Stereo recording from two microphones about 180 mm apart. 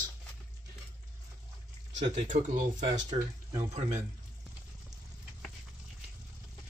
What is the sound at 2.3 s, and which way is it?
Speech, 45° right (ahead or behind).